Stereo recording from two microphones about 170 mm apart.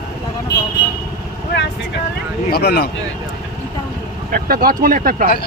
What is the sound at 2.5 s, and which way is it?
Speech, 65° left (ahead or behind).